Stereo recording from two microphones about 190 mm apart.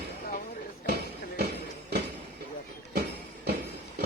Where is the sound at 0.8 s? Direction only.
55° right (ahead or behind).